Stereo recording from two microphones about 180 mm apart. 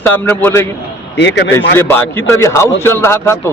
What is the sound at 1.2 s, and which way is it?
Speech, 80° left.